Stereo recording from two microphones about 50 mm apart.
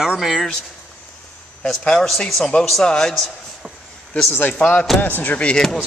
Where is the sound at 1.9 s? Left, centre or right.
Centre.